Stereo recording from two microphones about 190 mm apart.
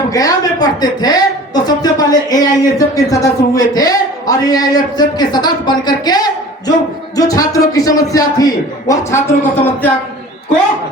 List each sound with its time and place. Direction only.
0.1 s a woman's voice: 20° left (ahead or behind)